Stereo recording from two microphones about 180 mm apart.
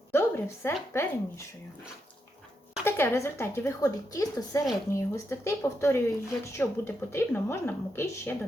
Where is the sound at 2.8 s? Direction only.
10° left (ahead or behind).